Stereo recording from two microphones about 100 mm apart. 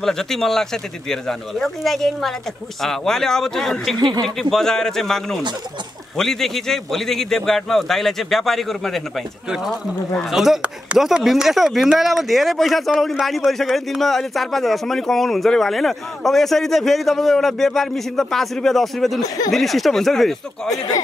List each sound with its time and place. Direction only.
0.0 s a man's voice: 5° left (ahead or behind)
4.0 s speech: 45° right (ahead or behind)
4.4 s a man's voice: 5° left (ahead or behind)
10.3 s a man's voice: 5° right (ahead or behind)
19.2 s speech: 35° left (ahead or behind)
19.5 s a man's voice: centre (ahead or behind)
20.7 s speech: 40° left (ahead or behind)